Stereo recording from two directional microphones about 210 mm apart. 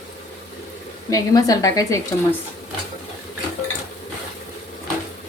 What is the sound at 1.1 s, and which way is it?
A woman's voice, 15° left (ahead or behind).